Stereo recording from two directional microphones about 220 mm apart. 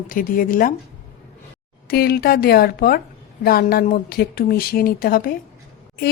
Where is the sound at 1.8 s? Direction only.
45° left (ahead or behind).